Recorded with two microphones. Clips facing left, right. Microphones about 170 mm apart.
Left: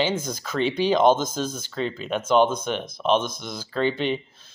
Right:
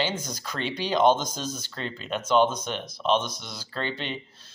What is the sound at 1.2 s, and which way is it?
Speech, 50° left (ahead or behind).